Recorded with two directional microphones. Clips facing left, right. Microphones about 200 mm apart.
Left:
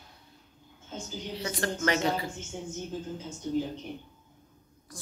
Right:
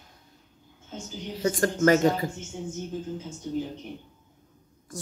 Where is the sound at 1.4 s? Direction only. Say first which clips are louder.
Right 9 dB; 45° right (ahead or behind).